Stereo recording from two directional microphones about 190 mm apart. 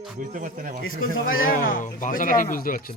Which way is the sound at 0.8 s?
90° left.